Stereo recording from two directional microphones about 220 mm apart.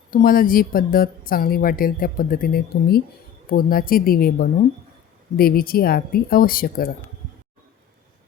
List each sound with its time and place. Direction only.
0.1 s a woman's voice: 40° left (ahead or behind)